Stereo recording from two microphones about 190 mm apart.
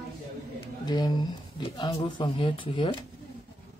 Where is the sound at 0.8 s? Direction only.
20° left (ahead or behind).